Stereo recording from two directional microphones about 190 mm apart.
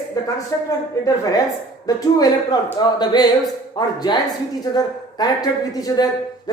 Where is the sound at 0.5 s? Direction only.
15° left (ahead or behind).